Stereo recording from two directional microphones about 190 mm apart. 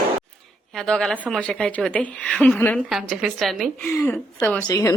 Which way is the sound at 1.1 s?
10° right (ahead or behind).